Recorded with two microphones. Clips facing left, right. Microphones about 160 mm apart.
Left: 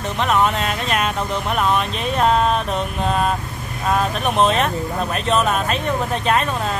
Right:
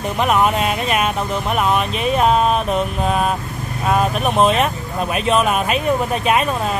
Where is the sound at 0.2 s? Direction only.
10° right (ahead or behind).